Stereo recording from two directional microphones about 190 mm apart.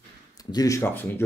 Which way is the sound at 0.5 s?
15° left (ahead or behind).